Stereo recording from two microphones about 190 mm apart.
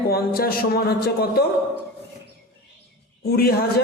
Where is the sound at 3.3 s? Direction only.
55° left (ahead or behind).